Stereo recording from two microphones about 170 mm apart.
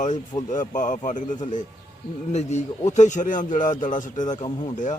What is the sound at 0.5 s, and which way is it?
Speech, 45° left (ahead or behind).